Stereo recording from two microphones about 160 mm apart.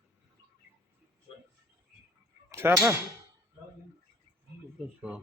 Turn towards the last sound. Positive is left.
turn(degrees=0)  # may be behind; listen again after turning